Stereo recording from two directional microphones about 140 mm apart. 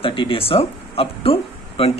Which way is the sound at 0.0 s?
35° left (ahead or behind).